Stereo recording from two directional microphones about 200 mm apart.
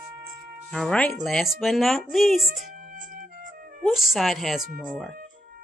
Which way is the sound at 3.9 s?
Centre (ahead or behind).